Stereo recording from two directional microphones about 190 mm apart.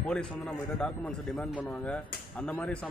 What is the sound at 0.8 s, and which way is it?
A man's voice, 5° left (ahead or behind).